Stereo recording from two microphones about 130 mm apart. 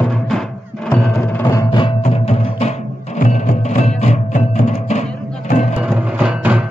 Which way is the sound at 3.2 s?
65° left (ahead or behind).